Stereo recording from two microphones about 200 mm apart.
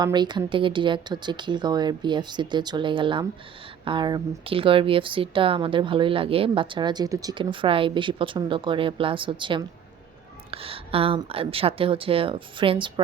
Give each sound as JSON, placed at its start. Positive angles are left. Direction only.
{"t": 0.0, "sound": "speech", "side_deg": -20}